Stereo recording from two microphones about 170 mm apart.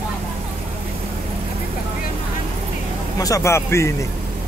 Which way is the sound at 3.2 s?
20° left (ahead or behind).